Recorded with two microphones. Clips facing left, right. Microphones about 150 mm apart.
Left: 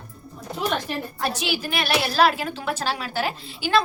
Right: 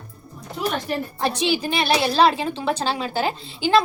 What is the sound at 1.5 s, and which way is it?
A woman's voice, 25° right (ahead or behind).